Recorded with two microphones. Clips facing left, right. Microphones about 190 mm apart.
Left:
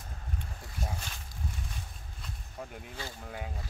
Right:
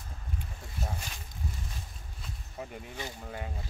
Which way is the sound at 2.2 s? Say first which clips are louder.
Right 1 dB; centre (ahead or behind).